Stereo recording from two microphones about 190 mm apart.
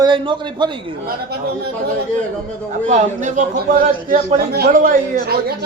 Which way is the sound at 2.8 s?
40° right (ahead or behind).